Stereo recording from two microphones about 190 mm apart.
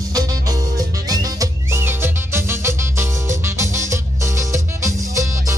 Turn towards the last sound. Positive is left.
turn(degrees=-15)  # may be behind; listen again after turning